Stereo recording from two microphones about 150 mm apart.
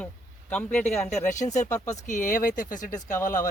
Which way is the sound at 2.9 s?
20° left (ahead or behind).